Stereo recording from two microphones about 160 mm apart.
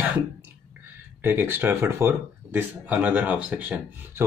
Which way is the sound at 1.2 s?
10° right (ahead or behind).